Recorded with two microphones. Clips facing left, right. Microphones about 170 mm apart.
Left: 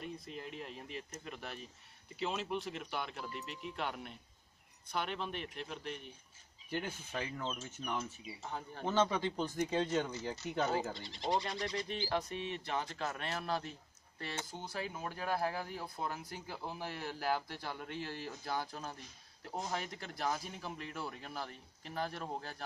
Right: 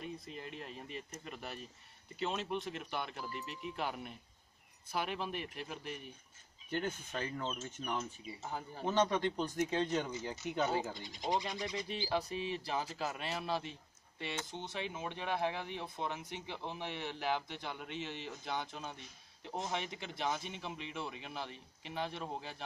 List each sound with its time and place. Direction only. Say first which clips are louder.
0.0 s speech: even; centre (ahead or behind)
6.7 s speech: right 2 dB; 10° left (ahead or behind)
7.8 s speech: even; 5° right (ahead or behind)
12.3 s speech: right 2 dB; 30° right (ahead or behind)
12.7 s speech: left 2 dB; 5° right (ahead or behind)